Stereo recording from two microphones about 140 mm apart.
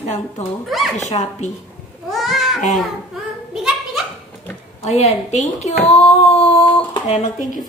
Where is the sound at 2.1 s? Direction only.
Centre (ahead or behind).